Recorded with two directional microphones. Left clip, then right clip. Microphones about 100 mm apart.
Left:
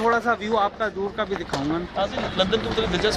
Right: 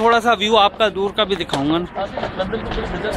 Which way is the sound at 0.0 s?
15° right (ahead or behind).